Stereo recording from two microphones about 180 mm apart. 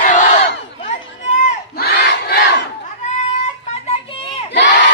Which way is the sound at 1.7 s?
60° left (ahead or behind).